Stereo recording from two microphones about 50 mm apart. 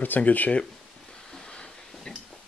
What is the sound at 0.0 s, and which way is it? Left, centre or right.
Speech, left.